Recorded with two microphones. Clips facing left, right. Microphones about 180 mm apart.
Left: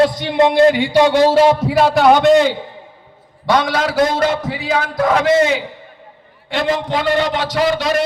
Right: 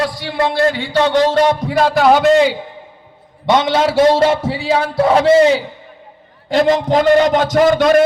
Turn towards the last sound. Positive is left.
turn(degrees=-50)  # may be behind; listen again after turning